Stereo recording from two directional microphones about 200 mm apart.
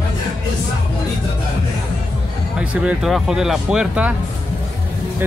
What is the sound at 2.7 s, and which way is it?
Speech, 5° right (ahead or behind).